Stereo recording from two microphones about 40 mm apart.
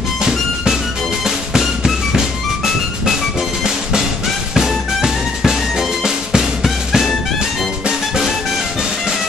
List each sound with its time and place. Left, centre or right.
0.2 s music: centre
4.6 s music: centre